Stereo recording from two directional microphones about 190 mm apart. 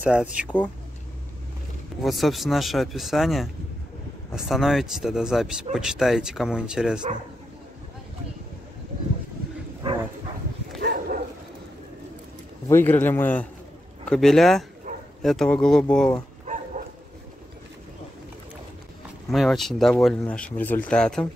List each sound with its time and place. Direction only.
0.0 s speech: 5° right (ahead or behind)
2.0 s speech: centre (ahead or behind)
9.8 s dog: 30° right (ahead or behind)
10.8 s dog: 65° right (ahead or behind)
12.6 s speech: 10° left (ahead or behind)
19.3 s speech: centre (ahead or behind)